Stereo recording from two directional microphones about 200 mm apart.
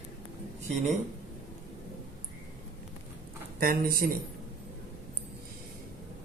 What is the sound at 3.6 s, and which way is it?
Speech, 45° right (ahead or behind).